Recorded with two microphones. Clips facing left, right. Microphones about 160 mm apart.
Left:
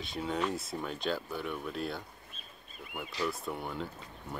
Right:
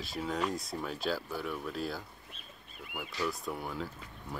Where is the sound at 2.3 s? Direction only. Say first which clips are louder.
Left 1 dB; 65° right (ahead or behind).